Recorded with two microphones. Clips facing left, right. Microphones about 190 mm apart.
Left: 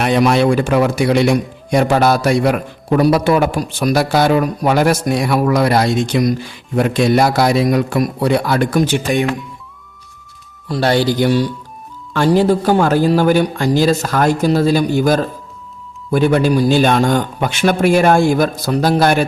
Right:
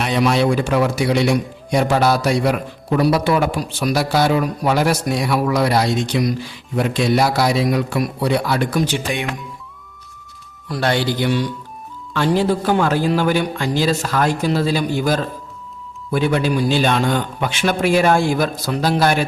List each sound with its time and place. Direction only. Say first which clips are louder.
0.0 s a man's voice: left 4 dB; 55° left (ahead or behind)
10.7 s a man's voice: left 5 dB; 35° left (ahead or behind)